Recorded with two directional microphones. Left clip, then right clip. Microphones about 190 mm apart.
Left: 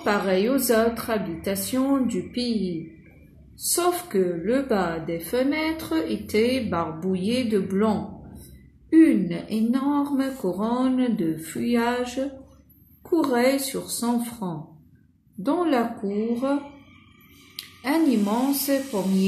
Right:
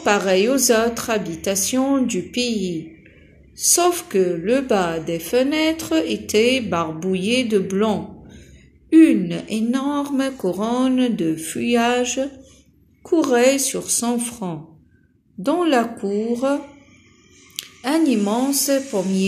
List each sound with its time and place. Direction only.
0.0 s a woman's voice: 25° right (ahead or behind)
3.7 s a woman's voice: 25° right (ahead or behind)
8.9 s a woman's voice: 25° right (ahead or behind)
17.8 s a woman's voice: 25° right (ahead or behind)